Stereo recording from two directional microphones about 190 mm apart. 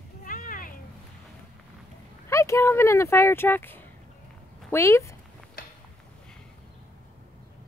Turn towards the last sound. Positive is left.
turn(degrees=50)  # may be behind; listen again after turning